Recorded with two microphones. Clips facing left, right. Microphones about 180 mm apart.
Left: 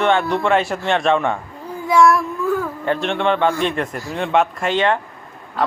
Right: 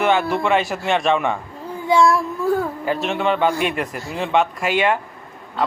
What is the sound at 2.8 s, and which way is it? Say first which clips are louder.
A man's voice: left 1 dB; 5° right (ahead or behind).